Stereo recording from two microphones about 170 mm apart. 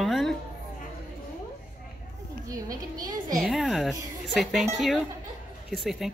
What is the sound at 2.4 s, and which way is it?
Speech, 20° right (ahead or behind).